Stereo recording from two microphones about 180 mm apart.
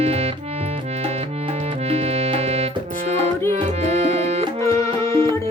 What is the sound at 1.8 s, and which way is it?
Music, 35° right (ahead or behind).